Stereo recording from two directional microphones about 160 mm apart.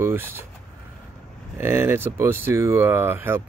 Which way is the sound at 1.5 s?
15° right (ahead or behind).